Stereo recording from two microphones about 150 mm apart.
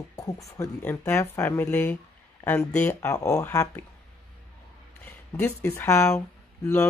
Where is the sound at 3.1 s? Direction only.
20° left (ahead or behind).